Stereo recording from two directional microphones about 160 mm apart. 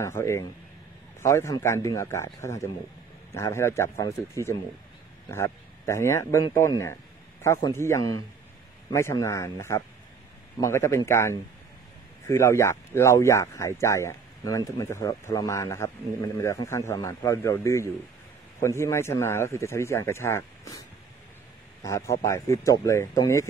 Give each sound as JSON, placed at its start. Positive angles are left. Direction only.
{"t": 0.0, "sound": "a man's voice", "side_deg": 20}
{"t": 21.8, "sound": "a man's voice", "side_deg": 20}